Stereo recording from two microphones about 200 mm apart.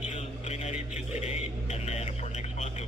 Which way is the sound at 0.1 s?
35° left (ahead or behind).